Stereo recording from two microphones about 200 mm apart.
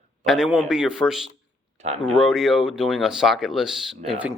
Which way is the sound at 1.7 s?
35° right (ahead or behind).